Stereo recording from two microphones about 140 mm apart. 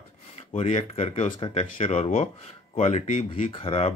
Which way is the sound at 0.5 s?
50° left (ahead or behind).